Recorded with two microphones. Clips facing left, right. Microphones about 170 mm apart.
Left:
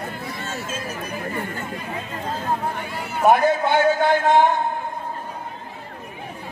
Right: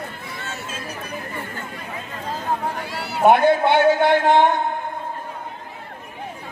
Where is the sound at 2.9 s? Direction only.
85° right.